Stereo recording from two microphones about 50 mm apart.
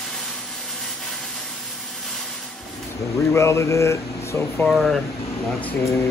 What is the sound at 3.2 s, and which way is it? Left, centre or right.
Speech, left.